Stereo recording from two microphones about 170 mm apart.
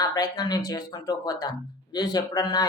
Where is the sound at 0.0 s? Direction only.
20° left (ahead or behind).